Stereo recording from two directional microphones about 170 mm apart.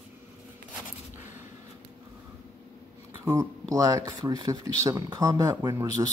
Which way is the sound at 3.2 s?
20° right (ahead or behind).